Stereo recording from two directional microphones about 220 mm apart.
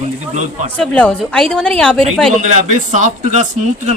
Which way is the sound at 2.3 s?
35° right (ahead or behind).